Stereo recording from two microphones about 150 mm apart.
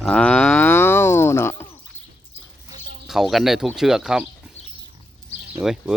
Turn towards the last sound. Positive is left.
turn(degrees=-5)  # may be behind; listen again after turning